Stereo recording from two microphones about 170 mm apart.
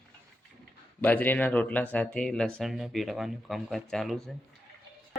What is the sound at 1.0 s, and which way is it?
Speech, 10° left (ahead or behind).